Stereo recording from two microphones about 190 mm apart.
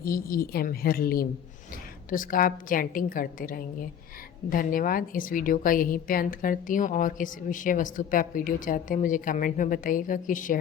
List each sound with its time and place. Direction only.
0.0 s a woman's voice: 50° left (ahead or behind)